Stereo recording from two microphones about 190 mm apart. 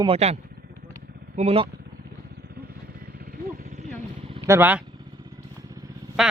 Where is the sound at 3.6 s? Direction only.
40° right (ahead or behind).